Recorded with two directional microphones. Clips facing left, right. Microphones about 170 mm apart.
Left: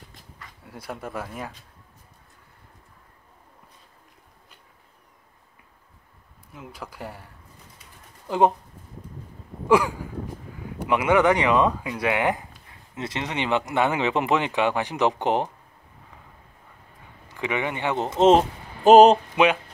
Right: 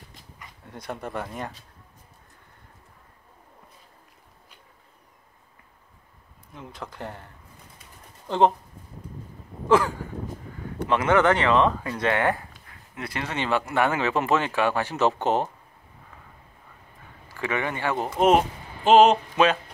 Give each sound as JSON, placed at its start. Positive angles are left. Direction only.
{"t": 0.7, "sound": "speech", "side_deg": 5}
{"t": 6.5, "sound": "speech", "side_deg": 5}
{"t": 8.3, "sound": "speech", "side_deg": 15}
{"t": 9.7, "sound": "a sound", "side_deg": 15}
{"t": 10.8, "sound": "speech", "side_deg": 10}
{"t": 17.3, "sound": "speech", "side_deg": 15}
{"t": 18.9, "sound": "speech", "side_deg": 40}
{"t": 19.3, "sound": "speech", "side_deg": 15}